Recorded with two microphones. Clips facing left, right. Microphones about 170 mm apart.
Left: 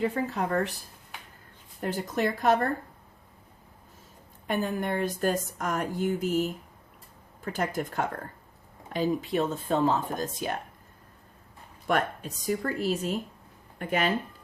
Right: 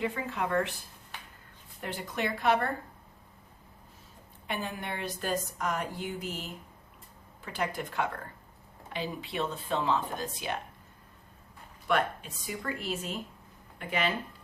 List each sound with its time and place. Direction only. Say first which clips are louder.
0.0 s speech: left 4 dB; 40° left (ahead or behind)
1.8 s speech: left 6 dB; 40° left (ahead or behind)
4.4 s speech: left 7 dB; 45° left (ahead or behind)
11.9 s speech: left 2 dB; 45° left (ahead or behind)